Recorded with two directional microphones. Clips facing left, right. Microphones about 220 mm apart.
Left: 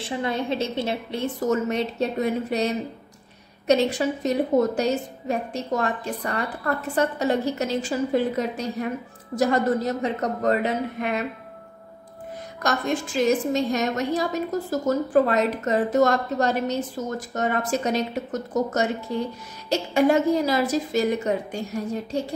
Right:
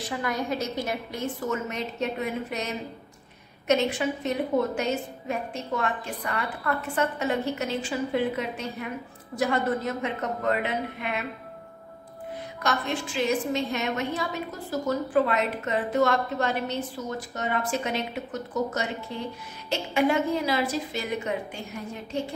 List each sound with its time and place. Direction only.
0.0 s a woman's voice: 25° left (ahead or behind)
12.6 s a woman's voice: 45° left (ahead or behind)